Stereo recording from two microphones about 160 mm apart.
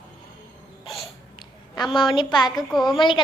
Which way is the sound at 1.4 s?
30° left (ahead or behind).